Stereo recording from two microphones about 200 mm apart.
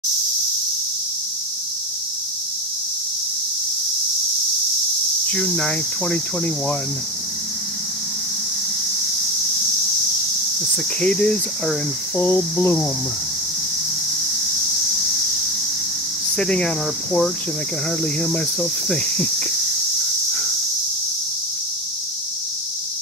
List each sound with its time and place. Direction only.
5.2 s speech: 5° left (ahead or behind)
11.0 s speech: 5° left (ahead or behind)
16.3 s speech: 5° left (ahead or behind)